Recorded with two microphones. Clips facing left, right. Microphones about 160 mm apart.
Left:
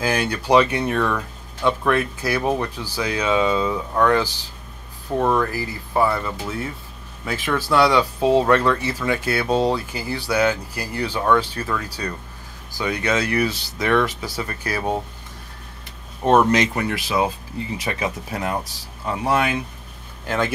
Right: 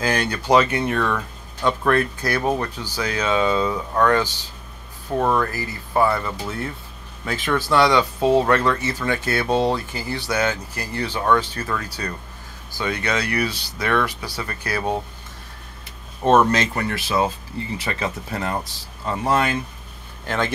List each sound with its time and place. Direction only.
0.0 s speech: 5° left (ahead or behind)
12.7 s speech: 15° left (ahead or behind)
16.3 s speech: 15° left (ahead or behind)